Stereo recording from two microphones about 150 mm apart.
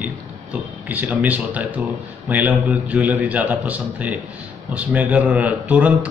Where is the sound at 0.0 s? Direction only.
10° right (ahead or behind).